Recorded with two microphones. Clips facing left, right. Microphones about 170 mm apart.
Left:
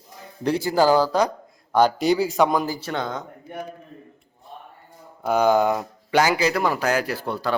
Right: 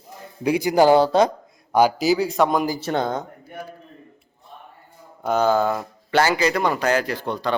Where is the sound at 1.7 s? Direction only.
5° right (ahead or behind).